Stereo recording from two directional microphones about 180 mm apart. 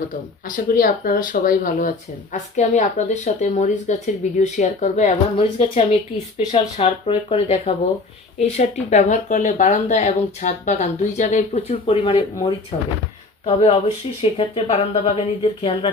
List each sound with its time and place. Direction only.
0.5 s speech: 50° left (ahead or behind)
5.4 s speech: 30° left (ahead or behind)
13.5 s speech: 30° left (ahead or behind)